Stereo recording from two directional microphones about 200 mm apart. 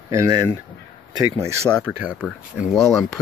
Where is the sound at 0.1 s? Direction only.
15° right (ahead or behind).